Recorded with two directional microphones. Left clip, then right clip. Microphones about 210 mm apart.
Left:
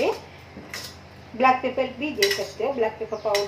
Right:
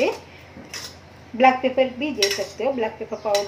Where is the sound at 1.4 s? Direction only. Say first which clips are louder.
Right 3 dB; 30° right (ahead or behind).